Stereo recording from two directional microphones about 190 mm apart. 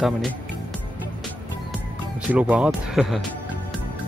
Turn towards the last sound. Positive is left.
turn(degrees=0)  # may be behind; listen again after turning